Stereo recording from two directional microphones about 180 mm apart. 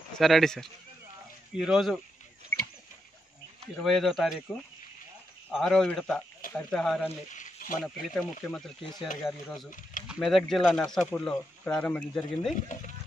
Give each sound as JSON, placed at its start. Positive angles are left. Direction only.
{"t": 0.2, "sound": "speech", "side_deg": 0}
{"t": 3.7, "sound": "speech", "side_deg": 0}
{"t": 7.3, "sound": "a sound", "side_deg": 45}
{"t": 7.8, "sound": "speech", "side_deg": 0}